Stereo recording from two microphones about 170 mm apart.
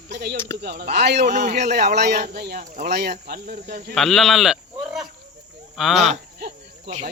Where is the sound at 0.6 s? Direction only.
70° right (ahead or behind).